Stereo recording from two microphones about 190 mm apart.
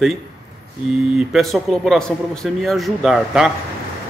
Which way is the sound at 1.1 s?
Centre (ahead or behind).